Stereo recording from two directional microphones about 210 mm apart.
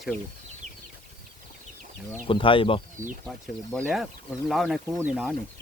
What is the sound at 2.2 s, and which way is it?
Speech, 25° left (ahead or behind).